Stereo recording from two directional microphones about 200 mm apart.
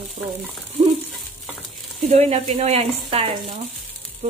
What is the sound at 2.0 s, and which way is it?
Speech, 30° right (ahead or behind).